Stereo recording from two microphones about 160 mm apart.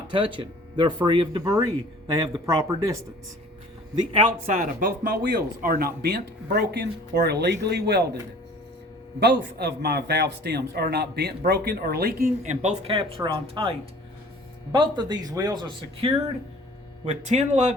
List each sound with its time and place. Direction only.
0.1 s speech: 30° right (ahead or behind)
4.4 s speech: 60° right (ahead or behind); by 8.0 s 90° right
9.2 s a man's voice: 90° right
12.4 s speech: 45° right (ahead or behind)
17.1 s speech: 45° right (ahead or behind)